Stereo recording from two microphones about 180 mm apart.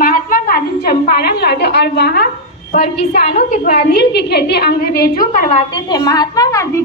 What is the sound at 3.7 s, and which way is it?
A woman's voice, 60° left (ahead or behind).